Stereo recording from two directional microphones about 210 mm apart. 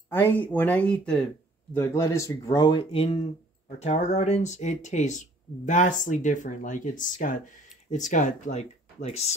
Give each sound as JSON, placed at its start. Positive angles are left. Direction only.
{"t": 0.1, "sound": "speech", "side_deg": 10}